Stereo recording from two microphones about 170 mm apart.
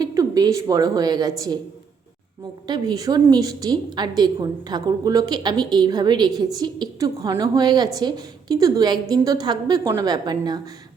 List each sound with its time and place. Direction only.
0.0 s a woman's voice: 20° right (ahead or behind)
2.6 s a woman's voice: 25° right (ahead or behind)